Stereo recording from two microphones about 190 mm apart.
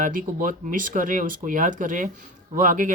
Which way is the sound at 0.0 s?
45° right (ahead or behind).